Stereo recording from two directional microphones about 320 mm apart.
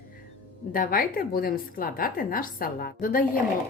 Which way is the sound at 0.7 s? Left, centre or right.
Left.